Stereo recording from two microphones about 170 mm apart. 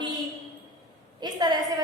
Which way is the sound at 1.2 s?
25° right (ahead or behind).